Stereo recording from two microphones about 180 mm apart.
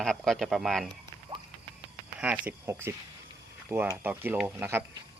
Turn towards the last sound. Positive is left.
turn(degrees=-15)  # may be behind; listen again after turning